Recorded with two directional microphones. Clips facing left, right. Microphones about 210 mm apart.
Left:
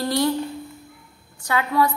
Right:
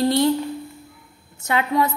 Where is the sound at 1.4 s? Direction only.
25° right (ahead or behind).